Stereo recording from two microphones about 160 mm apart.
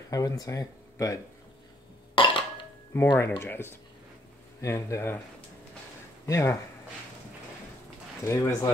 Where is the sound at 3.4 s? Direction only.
15° left (ahead or behind).